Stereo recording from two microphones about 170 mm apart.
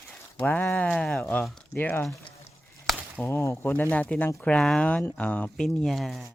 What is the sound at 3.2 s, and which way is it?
Speech, 15° left (ahead or behind).